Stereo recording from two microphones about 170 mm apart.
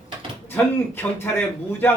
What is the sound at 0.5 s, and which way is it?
Speech, 10° left (ahead or behind).